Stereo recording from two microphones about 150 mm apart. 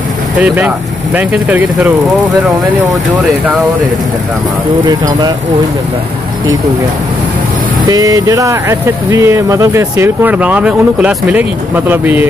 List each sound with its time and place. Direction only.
0.4 s speech: 10° right (ahead or behind)
4.8 s speech: 25° right (ahead or behind)
7.9 s speech: 25° right (ahead or behind)